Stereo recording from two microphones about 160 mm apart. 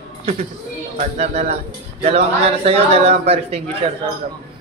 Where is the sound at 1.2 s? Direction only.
45° right (ahead or behind).